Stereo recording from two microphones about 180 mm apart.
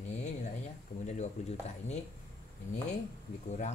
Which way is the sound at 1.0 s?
40° left (ahead or behind).